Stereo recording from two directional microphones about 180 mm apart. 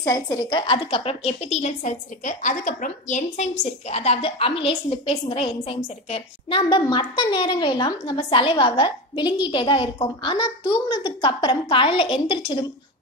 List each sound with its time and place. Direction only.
0.0 s a woman's voice: 20° left (ahead or behind)